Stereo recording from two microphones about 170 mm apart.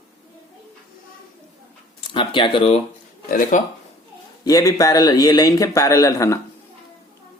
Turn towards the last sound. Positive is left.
turn(degrees=20)  # may be behind; listen again after turning